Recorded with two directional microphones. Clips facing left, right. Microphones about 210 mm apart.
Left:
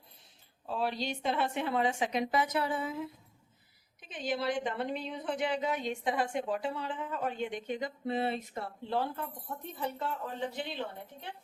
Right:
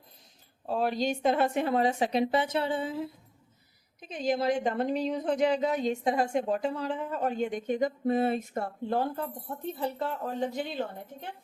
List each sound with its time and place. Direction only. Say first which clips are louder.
0.7 s a woman's voice: right 6 dB; 45° right (ahead or behind); by 3.1 s 30° right (ahead or behind)
4.0 s speech: right 6 dB; 40° right (ahead or behind)
9.7 s speech: right 3 dB; 35° right (ahead or behind)